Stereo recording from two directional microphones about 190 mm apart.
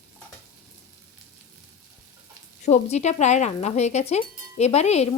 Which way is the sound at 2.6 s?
35° left (ahead or behind).